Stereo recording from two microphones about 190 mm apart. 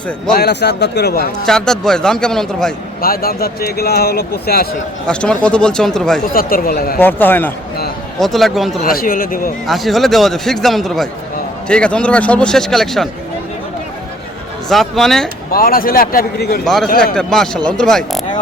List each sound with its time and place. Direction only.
0.3 s speech: 60° left (ahead or behind)
1.5 s a man's voice: 5° left (ahead or behind)
3.0 s speech: 50° left (ahead or behind)
5.0 s a man's voice: 5° left (ahead or behind)
6.3 s speech: 50° left (ahead or behind)
7.0 s a man's voice: 10° left (ahead or behind)
8.8 s speech: 50° left (ahead or behind)
9.6 s a man's voice: centre (ahead or behind)
14.7 s a man's voice: centre (ahead or behind)
15.5 s speech: 50° left (ahead or behind)
16.6 s a man's voice: centre (ahead or behind)